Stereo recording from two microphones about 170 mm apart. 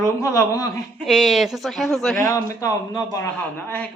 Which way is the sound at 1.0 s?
Centre (ahead or behind).